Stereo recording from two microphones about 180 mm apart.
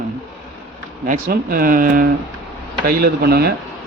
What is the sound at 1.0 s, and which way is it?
A man's voice, 50° right (ahead or behind).